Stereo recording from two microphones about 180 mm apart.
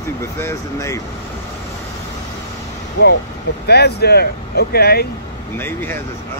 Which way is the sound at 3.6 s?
65° left (ahead or behind).